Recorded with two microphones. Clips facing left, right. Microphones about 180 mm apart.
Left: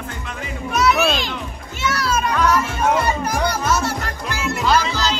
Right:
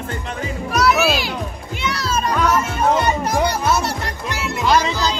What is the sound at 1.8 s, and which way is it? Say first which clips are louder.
Children playing: left 2 dB; 20° right (ahead or behind).